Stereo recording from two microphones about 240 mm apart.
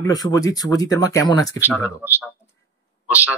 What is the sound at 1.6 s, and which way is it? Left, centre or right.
Speech, centre.